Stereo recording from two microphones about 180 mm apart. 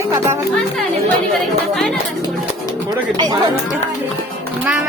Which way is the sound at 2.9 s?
25° right (ahead or behind).